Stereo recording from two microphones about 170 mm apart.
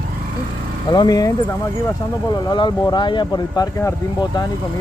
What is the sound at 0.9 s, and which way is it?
Speech, 20° left (ahead or behind).